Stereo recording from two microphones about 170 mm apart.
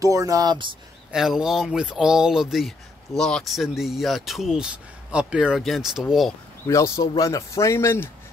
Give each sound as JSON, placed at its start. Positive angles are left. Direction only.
{"t": 0.0, "sound": "speech", "side_deg": -20}
{"t": 1.1, "sound": "speech", "side_deg": 0}
{"t": 6.7, "sound": "speech", "side_deg": 20}